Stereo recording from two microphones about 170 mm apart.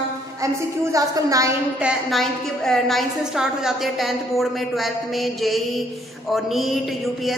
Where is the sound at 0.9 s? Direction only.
20° right (ahead or behind).